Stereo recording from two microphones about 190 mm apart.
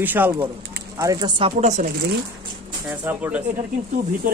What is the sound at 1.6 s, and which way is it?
Speech, 40° right (ahead or behind).